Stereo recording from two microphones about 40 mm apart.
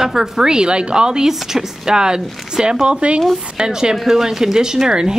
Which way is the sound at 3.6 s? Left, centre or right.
Centre.